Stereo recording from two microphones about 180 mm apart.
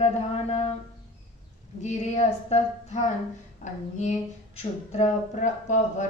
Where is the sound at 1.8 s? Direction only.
40° left (ahead or behind).